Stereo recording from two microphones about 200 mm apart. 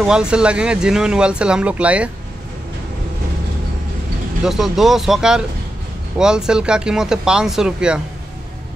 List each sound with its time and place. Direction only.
0.0 s speech: 5° right (ahead or behind)
4.5 s speech: centre (ahead or behind)